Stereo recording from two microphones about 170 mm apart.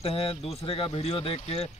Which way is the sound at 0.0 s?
35° left (ahead or behind).